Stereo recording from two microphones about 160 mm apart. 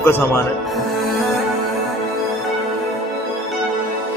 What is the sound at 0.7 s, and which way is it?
Music, centre (ahead or behind).